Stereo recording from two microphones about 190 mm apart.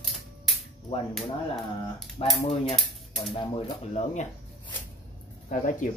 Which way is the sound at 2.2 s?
30° left (ahead or behind).